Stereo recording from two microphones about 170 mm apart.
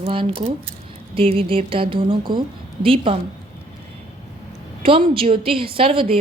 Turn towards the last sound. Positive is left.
turn(degrees=-30)  # may be behind; listen again after turning